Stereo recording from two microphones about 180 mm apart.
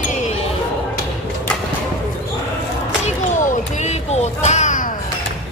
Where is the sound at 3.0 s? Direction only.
40° left (ahead or behind).